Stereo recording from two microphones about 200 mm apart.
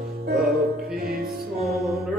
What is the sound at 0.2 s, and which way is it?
Music, 50° right (ahead or behind).